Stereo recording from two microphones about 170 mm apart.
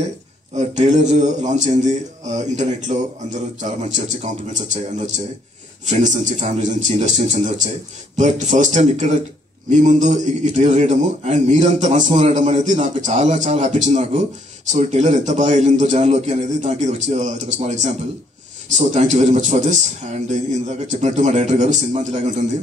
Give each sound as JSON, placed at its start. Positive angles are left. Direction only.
{"t": 0.7, "sound": "a man's voice", "side_deg": -45}